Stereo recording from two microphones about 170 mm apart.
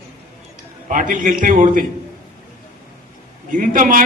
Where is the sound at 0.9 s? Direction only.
50° right (ahead or behind).